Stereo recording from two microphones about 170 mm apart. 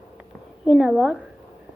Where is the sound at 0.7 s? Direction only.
5° right (ahead or behind).